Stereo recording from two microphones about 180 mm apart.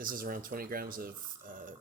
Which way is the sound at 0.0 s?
50° right (ahead or behind).